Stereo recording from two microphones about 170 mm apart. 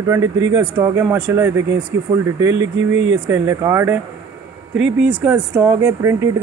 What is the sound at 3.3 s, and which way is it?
Speech, 15° right (ahead or behind).